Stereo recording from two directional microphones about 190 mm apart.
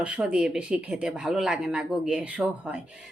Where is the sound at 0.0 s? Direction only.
5° right (ahead or behind).